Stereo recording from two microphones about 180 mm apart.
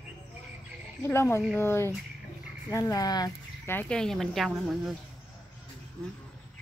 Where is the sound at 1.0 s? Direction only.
15° left (ahead or behind).